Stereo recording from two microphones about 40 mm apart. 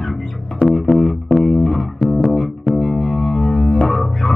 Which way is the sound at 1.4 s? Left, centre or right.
Centre.